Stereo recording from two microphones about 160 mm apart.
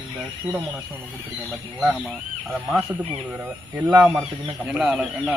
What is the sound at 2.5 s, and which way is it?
Speech, 5° right (ahead or behind).